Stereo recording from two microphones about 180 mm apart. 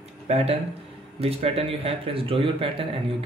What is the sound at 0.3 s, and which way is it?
Speech, 35° right (ahead or behind).